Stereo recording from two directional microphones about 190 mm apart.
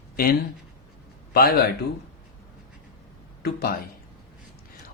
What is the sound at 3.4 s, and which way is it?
Speech, 55° left (ahead or behind).